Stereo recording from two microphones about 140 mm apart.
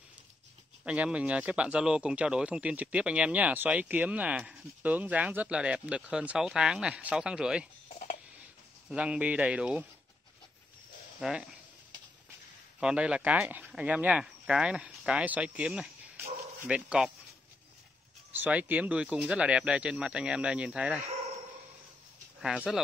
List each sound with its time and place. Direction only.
0.8 s speech: 10° right (ahead or behind)
7.9 s a sound: 50° left (ahead or behind)
8.8 s speech: 10° right (ahead or behind)
11.1 s speech: centre (ahead or behind)
12.8 s speech: 5° right (ahead or behind)
18.3 s speech: 10° right (ahead or behind)
22.4 s speech: 5° right (ahead or behind)